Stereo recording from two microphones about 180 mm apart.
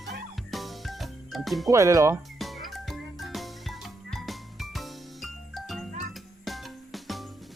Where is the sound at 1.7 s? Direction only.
15° right (ahead or behind).